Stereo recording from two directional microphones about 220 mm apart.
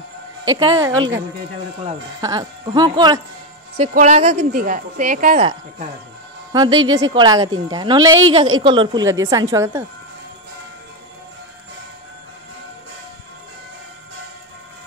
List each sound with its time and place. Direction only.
0.5 s speech: 15° right (ahead or behind)
2.2 s a woman's voice: 20° right (ahead or behind)
3.9 s a woman's voice: 30° right (ahead or behind)
6.5 s a woman's voice: 20° right (ahead or behind)